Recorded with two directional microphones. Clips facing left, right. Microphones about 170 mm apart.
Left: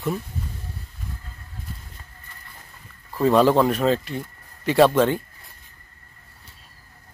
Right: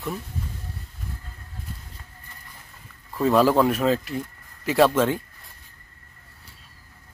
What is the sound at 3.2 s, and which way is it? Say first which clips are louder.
Speech: left 2 dB; 5° right (ahead or behind).